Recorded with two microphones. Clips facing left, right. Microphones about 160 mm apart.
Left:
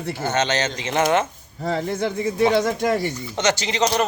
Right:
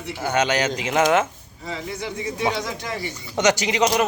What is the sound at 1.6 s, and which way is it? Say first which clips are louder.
Speech: left 7 dB; 60° left (ahead or behind).